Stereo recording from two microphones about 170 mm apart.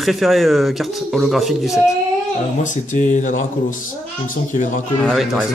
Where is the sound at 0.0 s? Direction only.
Centre (ahead or behind).